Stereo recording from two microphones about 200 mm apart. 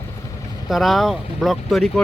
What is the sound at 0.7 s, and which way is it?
Speech, centre (ahead or behind).